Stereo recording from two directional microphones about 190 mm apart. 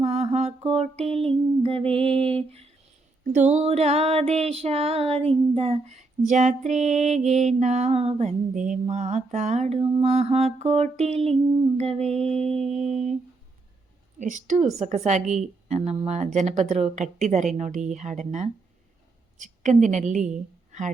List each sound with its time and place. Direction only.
0.0 s a sound: 35° right (ahead or behind)
3.3 s mantra: 40° right (ahead or behind)
12.3 s mantra: 5° left (ahead or behind)
14.2 s mantra: 40° right (ahead or behind)
19.4 s a woman's voice: 40° right (ahead or behind)